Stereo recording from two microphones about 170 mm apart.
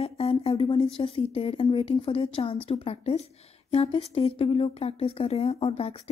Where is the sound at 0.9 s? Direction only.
35° left (ahead or behind).